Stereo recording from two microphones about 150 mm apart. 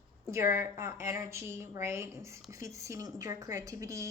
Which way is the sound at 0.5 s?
15° right (ahead or behind).